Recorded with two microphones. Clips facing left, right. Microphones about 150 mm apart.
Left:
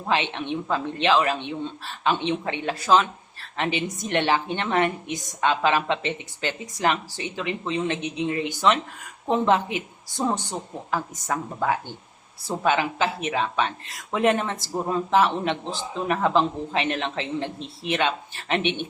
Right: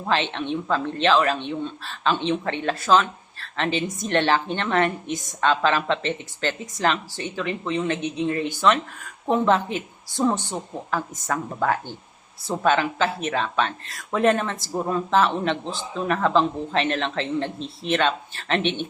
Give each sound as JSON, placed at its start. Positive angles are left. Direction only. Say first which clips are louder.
{"t": 0.1, "sound": "speech", "louder": "right 1 dB", "side_deg": 15}